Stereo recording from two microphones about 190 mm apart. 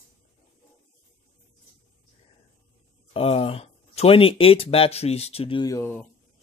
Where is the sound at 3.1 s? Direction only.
30° left (ahead or behind); by 6.1 s 10° left (ahead or behind).